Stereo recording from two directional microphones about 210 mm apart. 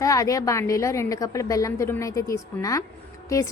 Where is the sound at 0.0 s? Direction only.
15° left (ahead or behind).